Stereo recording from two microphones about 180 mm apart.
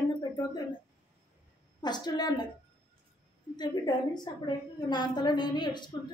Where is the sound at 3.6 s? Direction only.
25° left (ahead or behind).